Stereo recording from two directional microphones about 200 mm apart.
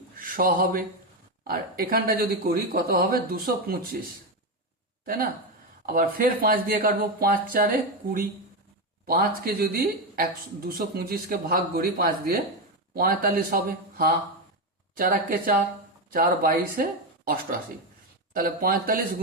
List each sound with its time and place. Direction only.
0.2 s a sound: 45° right (ahead or behind)
1.5 s a woman's voice: 45° right (ahead or behind)
5.0 s a woman's voice: 45° right (ahead or behind)